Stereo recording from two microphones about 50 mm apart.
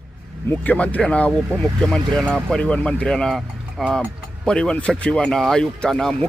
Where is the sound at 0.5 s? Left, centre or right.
Left.